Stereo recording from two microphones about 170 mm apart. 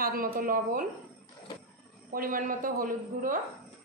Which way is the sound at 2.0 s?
55° right (ahead or behind).